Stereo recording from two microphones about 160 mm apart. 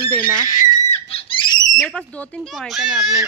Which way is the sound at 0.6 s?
45° left (ahead or behind).